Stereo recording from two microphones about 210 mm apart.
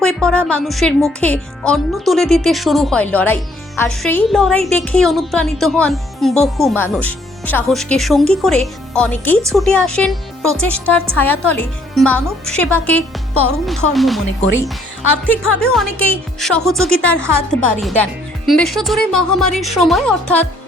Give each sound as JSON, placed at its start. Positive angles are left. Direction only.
{"t": 0.0, "sound": "a woman's voice", "side_deg": 5}
{"t": 13.3, "sound": "speech", "side_deg": 90}
{"t": 13.7, "sound": "a woman's voice", "side_deg": 0}
{"t": 15.6, "sound": "a woman's voice", "side_deg": 0}